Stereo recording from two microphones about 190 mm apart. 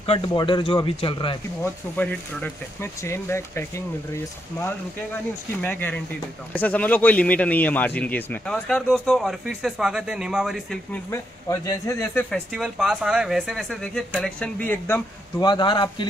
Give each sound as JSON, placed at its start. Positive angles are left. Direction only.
{"t": 0.0, "sound": "speech", "side_deg": 25}
{"t": 1.6, "sound": "a man's voice", "side_deg": 10}
{"t": 11.1, "sound": "a man's voice", "side_deg": 20}
{"t": 15.4, "sound": "speech", "side_deg": 25}